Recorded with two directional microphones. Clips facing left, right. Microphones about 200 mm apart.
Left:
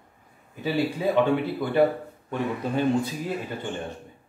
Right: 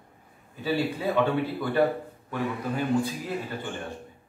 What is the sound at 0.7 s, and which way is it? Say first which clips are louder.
Speech: left 3 dB; 15° left (ahead or behind).